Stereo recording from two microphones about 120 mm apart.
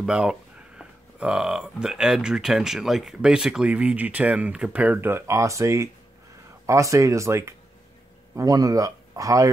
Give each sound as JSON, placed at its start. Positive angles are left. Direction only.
{"t": 0.0, "sound": "speech", "side_deg": -5}